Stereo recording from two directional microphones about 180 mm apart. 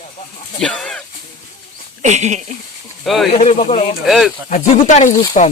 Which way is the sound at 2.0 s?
40° right (ahead or behind).